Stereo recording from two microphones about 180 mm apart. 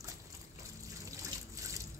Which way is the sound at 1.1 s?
20° right (ahead or behind).